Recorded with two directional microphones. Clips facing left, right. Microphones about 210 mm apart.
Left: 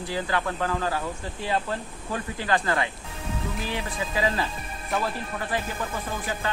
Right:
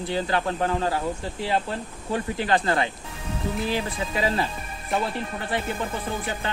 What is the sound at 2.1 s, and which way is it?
Speech, 25° right (ahead or behind).